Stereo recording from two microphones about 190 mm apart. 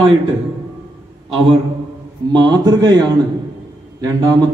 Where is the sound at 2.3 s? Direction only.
20° right (ahead or behind).